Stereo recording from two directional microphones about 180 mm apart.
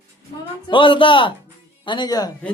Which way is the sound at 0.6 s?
30° left (ahead or behind).